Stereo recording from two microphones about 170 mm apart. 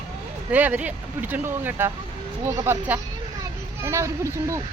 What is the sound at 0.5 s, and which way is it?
Speech, 10° right (ahead or behind).